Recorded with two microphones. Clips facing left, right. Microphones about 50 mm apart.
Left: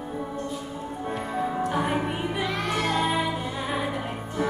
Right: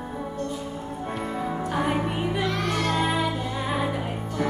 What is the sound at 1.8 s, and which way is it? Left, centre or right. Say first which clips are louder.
Music: right 1 dB; centre.